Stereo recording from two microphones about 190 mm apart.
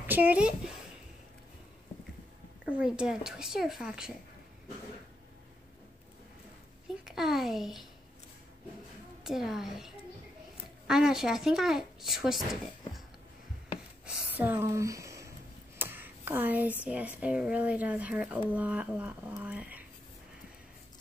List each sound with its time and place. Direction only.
0.0 s speech: 10° right (ahead or behind)
2.8 s a child's voice: 5° right (ahead or behind)
7.1 s a child's voice: centre (ahead or behind)
9.2 s a child's voice: centre (ahead or behind)
14.0 s a sound: 10° right (ahead or behind)
16.8 s speech: 5° right (ahead or behind)